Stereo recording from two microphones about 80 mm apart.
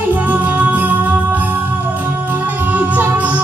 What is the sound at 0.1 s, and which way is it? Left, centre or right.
Music, right.